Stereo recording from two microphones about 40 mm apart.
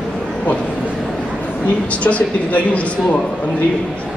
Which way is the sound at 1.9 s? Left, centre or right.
Left.